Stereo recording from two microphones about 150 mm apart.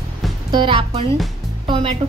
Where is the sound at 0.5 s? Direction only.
35° right (ahead or behind).